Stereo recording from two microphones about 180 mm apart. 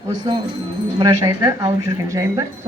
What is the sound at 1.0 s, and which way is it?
A woman's voice, 20° right (ahead or behind).